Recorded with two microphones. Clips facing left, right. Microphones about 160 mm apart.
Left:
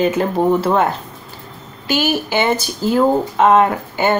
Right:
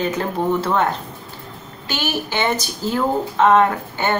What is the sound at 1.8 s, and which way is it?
Speech, 10° left (ahead or behind).